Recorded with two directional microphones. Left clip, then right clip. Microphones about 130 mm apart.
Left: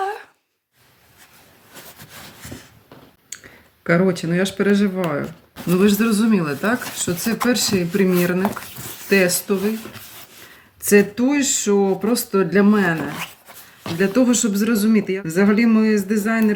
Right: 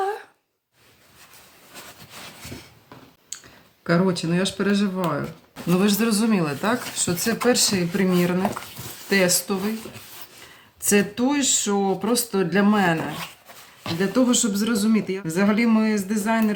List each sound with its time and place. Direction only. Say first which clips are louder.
0.0 s a sound: left 1 dB; 25° right (ahead or behind)
3.8 s speech: left 4 dB; 15° right (ahead or behind)
5.6 s speech: left 4 dB; 30° right (ahead or behind)
10.8 s speech: left 5 dB; 20° right (ahead or behind)
14.0 s speech: left 3 dB; 15° right (ahead or behind)